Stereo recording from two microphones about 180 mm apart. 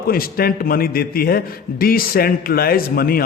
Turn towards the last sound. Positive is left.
turn(degrees=55)  # may be behind; listen again after turning